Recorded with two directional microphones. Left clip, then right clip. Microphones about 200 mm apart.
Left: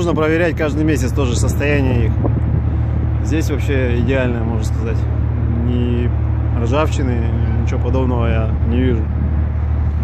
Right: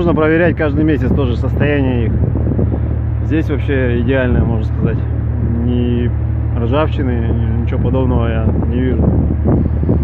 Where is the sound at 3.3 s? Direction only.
10° right (ahead or behind).